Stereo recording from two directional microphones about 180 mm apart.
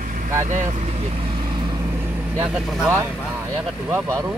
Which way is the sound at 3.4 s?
10° right (ahead or behind).